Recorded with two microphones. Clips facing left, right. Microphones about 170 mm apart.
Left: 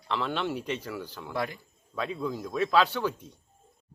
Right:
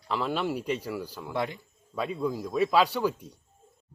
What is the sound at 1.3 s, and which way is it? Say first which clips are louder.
Speech: right 1 dB; 25° right (ahead or behind).